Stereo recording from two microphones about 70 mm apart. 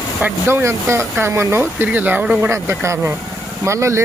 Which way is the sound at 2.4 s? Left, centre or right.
Right.